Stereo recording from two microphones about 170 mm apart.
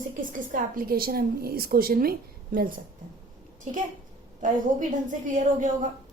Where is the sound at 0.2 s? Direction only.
50° right (ahead or behind).